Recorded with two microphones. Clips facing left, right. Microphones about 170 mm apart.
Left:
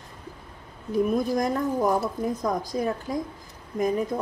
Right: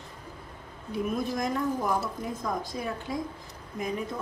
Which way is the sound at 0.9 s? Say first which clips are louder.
Left 6 dB; 40° left (ahead or behind).